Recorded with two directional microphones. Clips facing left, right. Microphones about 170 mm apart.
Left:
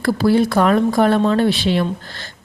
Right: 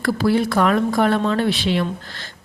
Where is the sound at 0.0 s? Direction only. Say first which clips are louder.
Left 3 dB; 35° left (ahead or behind).